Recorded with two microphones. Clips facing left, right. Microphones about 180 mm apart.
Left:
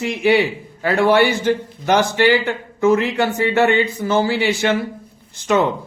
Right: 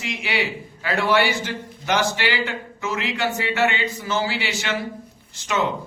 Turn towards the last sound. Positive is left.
turn(degrees=55)  # may be behind; listen again after turning